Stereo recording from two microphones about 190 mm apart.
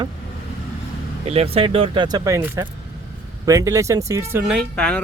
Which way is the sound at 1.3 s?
30° right (ahead or behind).